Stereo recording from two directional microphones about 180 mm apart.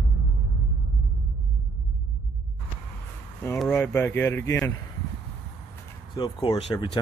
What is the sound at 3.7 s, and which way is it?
Speech, 15° left (ahead or behind).